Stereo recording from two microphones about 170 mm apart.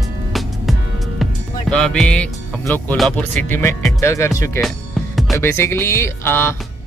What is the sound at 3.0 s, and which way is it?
Speech, 5° left (ahead or behind).